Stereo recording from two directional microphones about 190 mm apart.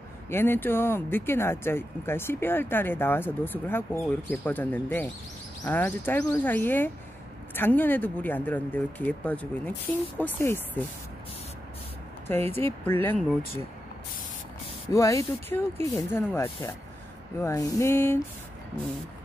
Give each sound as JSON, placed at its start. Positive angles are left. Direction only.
{"t": 0.3, "sound": "speech", "side_deg": 10}
{"t": 12.5, "sound": "speech", "side_deg": 10}
{"t": 14.9, "sound": "speech", "side_deg": 15}